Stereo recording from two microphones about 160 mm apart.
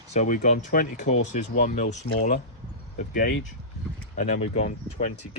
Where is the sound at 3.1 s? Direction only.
65° left (ahead or behind).